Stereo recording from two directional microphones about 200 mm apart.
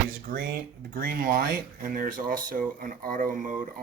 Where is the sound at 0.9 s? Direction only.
45° right (ahead or behind).